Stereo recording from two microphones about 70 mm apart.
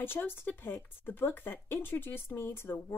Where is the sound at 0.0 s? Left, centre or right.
Left.